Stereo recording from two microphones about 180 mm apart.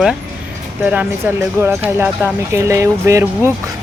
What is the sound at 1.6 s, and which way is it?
Speech, 10° right (ahead or behind).